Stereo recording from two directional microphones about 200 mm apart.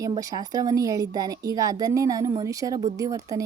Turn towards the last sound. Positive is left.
turn(degrees=-15)  # may be behind; listen again after turning